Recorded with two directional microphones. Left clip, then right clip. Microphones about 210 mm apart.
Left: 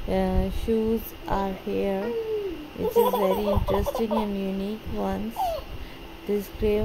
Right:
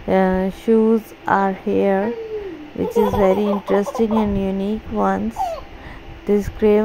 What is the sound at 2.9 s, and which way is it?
Speech, 10° right (ahead or behind).